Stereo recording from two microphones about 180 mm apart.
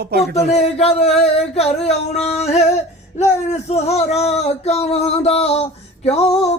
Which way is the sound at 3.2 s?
40° left (ahead or behind).